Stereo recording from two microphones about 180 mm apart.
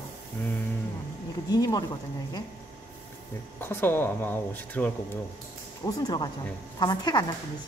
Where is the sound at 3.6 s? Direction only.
10° left (ahead or behind).